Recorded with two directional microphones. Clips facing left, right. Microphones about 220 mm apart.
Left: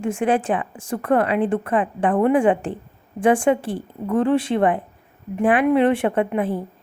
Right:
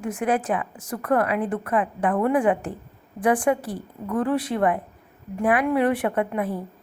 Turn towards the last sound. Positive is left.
turn(degrees=30)  # may be behind; listen again after turning